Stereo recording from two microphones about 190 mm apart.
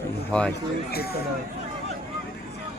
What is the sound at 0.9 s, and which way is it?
Speech, 55° left (ahead or behind).